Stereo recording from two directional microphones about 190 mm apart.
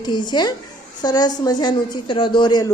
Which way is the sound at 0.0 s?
25° left (ahead or behind).